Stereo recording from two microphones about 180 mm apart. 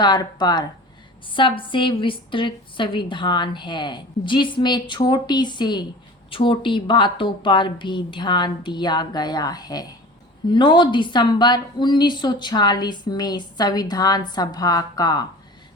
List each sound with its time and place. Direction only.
0.0 s a woman's voice: 25° left (ahead or behind)